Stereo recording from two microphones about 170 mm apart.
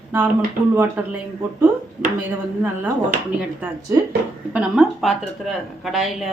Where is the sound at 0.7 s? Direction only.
10° right (ahead or behind).